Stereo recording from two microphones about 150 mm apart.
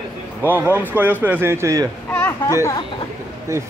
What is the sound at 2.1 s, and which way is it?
Speech, 10° left (ahead or behind).